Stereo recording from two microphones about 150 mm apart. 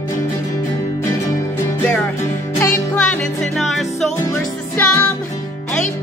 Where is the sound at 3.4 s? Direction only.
5° left (ahead or behind).